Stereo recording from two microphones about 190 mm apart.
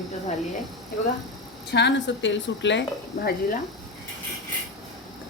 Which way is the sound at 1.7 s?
70° left (ahead or behind).